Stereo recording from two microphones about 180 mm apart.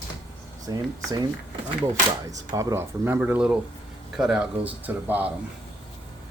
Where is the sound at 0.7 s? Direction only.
20° right (ahead or behind).